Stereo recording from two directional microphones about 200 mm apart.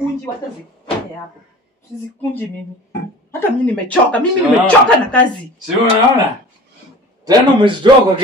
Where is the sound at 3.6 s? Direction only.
5° left (ahead or behind).